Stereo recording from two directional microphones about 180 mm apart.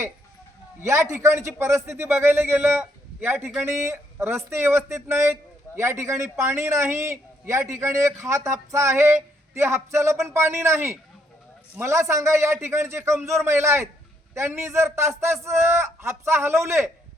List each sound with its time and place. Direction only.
0.8 s a man's voice: 15° right (ahead or behind)